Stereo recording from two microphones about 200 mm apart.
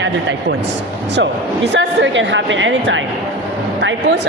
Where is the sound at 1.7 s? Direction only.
65° right (ahead or behind).